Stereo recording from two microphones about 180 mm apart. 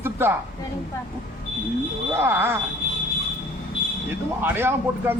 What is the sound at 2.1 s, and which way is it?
Speech, 10° right (ahead or behind).